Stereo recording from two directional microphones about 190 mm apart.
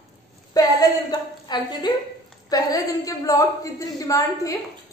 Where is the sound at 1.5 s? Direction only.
20° left (ahead or behind).